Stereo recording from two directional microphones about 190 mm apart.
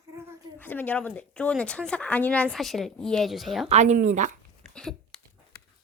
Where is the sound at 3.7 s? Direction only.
40° right (ahead or behind).